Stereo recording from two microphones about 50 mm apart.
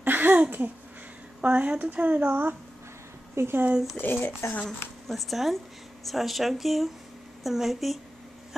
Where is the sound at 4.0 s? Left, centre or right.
Left.